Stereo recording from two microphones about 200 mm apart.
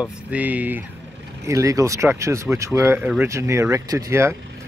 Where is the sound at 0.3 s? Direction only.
10° right (ahead or behind).